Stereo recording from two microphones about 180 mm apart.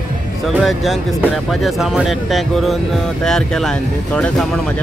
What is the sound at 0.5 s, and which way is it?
Speech, centre (ahead or behind).